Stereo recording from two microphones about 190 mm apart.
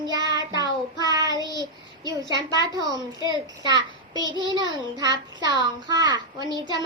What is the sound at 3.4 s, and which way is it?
Speech, 20° right (ahead or behind).